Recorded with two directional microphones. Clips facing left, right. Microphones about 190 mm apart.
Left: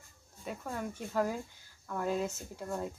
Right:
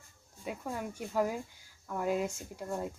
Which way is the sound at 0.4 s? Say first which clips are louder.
Right 1 dB; 10° right (ahead or behind).